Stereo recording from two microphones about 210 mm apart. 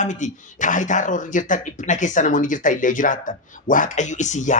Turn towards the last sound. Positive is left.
turn(degrees=35)  # may be behind; listen again after turning